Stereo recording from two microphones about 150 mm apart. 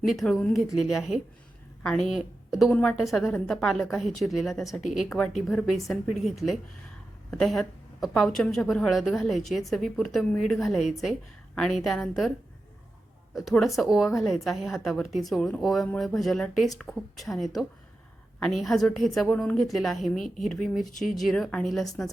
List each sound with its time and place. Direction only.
0.0 s a woman's voice: centre (ahead or behind)
13.3 s a woman's voice: centre (ahead or behind)